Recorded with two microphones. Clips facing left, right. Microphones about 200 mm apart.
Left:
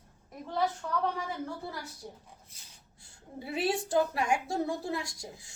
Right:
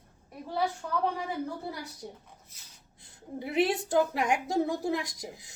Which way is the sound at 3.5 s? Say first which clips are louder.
Right 3 dB; 20° right (ahead or behind).